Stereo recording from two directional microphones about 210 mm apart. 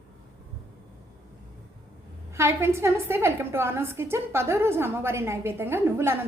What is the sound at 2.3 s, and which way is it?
A woman's voice, 10° right (ahead or behind).